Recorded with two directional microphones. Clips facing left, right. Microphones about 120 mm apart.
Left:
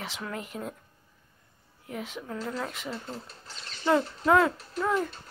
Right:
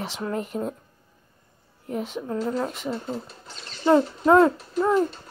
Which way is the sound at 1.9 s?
25° right (ahead or behind).